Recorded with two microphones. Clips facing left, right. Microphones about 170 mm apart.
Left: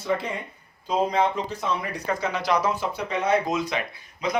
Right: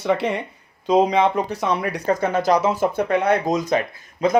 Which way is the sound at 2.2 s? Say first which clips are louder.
Right 5 dB; 50° right (ahead or behind).